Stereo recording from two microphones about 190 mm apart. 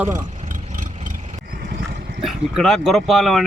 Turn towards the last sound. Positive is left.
turn(degrees=0)  # may be behind; listen again after turning